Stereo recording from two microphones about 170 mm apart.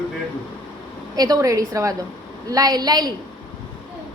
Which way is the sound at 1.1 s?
20° right (ahead or behind).